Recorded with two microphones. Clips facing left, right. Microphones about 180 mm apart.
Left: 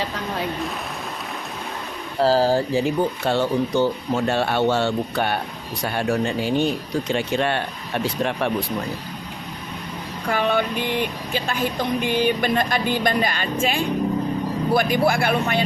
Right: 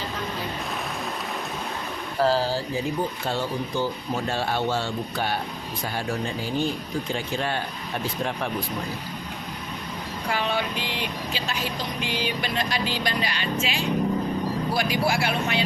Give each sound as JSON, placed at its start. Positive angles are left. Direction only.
{"t": 2.1, "sound": "speech", "side_deg": 35}
{"t": 2.6, "sound": "speech", "side_deg": 75}
{"t": 10.2, "sound": "speech", "side_deg": 55}